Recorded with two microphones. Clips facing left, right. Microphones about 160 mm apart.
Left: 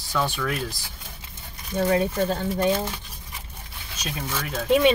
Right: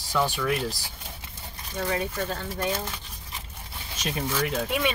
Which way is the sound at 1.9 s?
25° left (ahead or behind).